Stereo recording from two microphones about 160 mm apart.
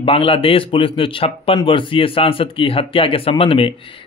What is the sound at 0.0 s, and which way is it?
Speech, 35° left (ahead or behind).